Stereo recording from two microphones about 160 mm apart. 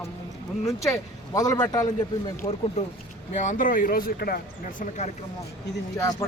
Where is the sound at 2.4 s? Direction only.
40° left (ahead or behind).